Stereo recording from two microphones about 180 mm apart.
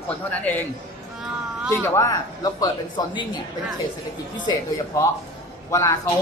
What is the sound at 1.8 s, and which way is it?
Speech, 15° left (ahead or behind).